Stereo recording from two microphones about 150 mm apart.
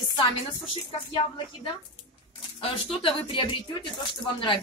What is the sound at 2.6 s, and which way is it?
A woman's voice, 40° left (ahead or behind).